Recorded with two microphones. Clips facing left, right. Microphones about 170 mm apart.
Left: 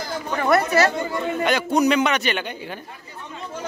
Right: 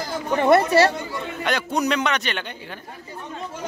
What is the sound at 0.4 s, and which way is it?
Speech, 25° right (ahead or behind).